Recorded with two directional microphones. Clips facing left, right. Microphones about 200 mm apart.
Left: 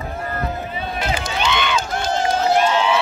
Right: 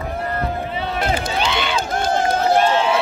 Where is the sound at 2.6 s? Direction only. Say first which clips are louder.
Right 1 dB; 35° right (ahead or behind).